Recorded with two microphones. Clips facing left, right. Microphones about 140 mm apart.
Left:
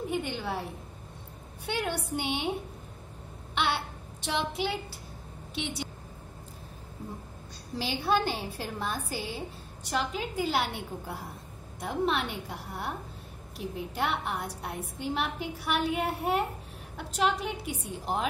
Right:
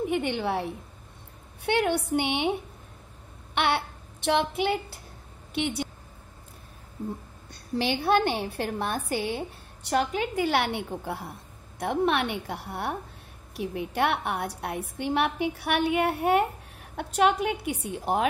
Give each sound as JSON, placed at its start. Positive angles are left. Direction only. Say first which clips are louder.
{"t": 0.1, "sound": "a woman's voice", "louder": "right 5 dB", "side_deg": -65}
{"t": 1.7, "sound": "a woman's voice", "louder": "right 7 dB", "side_deg": -65}
{"t": 3.5, "sound": "a sound", "louder": "right 4 dB", "side_deg": -60}
{"t": 5.5, "sound": "speech", "louder": "right 6 dB", "side_deg": -55}
{"t": 7.7, "sound": "a woman's voice", "louder": "right 5 dB", "side_deg": -65}